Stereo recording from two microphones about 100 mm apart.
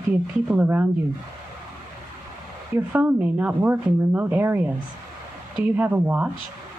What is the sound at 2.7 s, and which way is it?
Speech, 20° right (ahead or behind).